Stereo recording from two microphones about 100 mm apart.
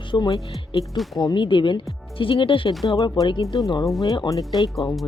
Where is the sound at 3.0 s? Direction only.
45° left (ahead or behind).